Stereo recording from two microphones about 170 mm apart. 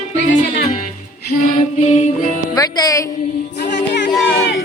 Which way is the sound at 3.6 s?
90° left.